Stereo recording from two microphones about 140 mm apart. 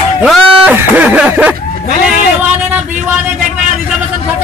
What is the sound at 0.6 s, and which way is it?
Speech, 15° right (ahead or behind).